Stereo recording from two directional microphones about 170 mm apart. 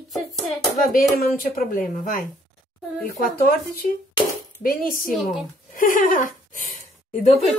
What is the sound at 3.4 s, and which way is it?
Speech, 60° left (ahead or behind).